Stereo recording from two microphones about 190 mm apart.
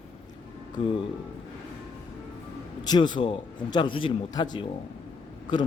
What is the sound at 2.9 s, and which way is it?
Speech, 25° left (ahead or behind).